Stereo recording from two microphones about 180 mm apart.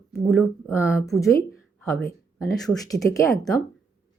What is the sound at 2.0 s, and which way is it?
Speech, 55° left (ahead or behind).